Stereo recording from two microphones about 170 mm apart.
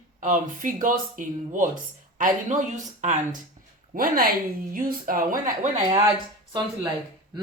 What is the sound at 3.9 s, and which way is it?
Speech, 60° right (ahead or behind).